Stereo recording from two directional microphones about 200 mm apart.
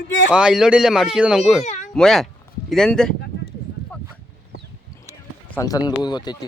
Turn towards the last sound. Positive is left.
turn(degrees=20)  # may be behind; listen again after turning